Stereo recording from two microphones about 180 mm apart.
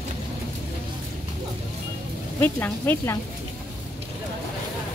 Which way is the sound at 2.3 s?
10° left (ahead or behind).